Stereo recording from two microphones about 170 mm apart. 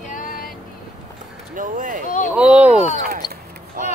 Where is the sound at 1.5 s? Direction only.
50° right (ahead or behind).